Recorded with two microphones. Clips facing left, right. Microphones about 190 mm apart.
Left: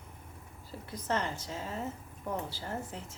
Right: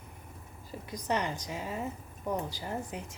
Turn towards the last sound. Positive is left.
turn(degrees=-15)  # may be behind; listen again after turning